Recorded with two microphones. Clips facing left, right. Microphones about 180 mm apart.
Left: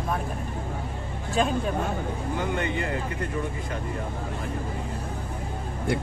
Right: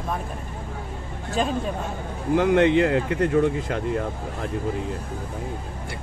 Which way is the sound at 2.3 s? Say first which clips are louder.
Right 12 dB; 75° right (ahead or behind).